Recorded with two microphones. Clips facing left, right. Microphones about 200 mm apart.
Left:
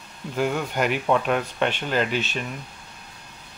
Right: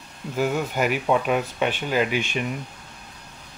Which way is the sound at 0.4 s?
5° right (ahead or behind).